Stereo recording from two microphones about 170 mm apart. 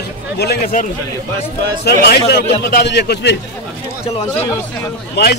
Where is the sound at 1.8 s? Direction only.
75° left (ahead or behind).